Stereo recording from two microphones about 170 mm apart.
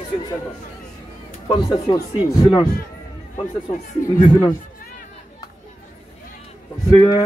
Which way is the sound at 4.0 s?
55° left (ahead or behind).